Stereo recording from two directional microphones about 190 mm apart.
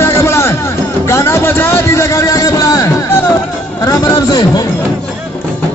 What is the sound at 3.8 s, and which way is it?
Chatter, 15° left (ahead or behind).